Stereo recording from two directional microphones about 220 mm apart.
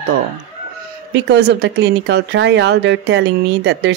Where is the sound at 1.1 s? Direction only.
50° right (ahead or behind).